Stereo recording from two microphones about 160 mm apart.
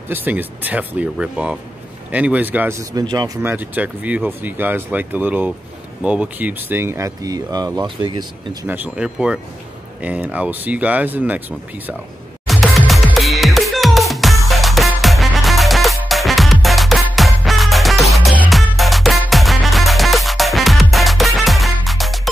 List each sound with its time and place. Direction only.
0.1 s speech: 10° right (ahead or behind)
3.4 s speech: 10° right (ahead or behind); by 8.3 s 30° right (ahead or behind)
8.6 s speech: 10° right (ahead or behind)
12.4 s music: centre (ahead or behind)